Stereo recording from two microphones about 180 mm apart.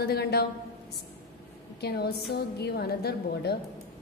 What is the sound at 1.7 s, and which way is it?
A woman's voice, 65° left (ahead or behind).